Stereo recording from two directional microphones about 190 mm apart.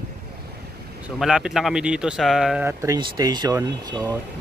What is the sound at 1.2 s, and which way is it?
Speech, centre (ahead or behind).